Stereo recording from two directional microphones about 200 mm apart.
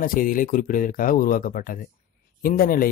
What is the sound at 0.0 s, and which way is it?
A man's voice, 45° left (ahead or behind).